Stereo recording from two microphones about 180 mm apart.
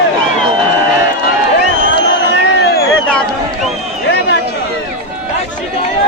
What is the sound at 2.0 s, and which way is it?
Crowd, 75° left (ahead or behind).